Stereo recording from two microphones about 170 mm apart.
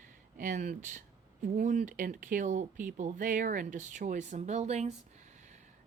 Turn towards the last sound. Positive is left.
turn(degrees=-40)  # may be behind; listen again after turning